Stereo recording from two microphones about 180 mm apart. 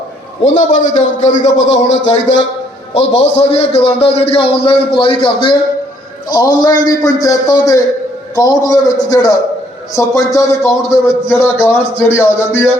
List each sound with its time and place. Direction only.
0.4 s a man's voice: 40° left (ahead or behind); by 12.6 s 15° left (ahead or behind)